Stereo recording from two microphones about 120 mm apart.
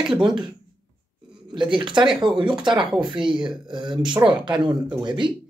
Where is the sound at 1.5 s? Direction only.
40° right (ahead or behind).